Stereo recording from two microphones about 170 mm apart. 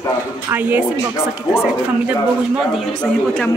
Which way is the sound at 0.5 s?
10° right (ahead or behind).